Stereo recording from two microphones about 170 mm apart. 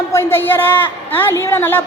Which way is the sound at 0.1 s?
15° left (ahead or behind).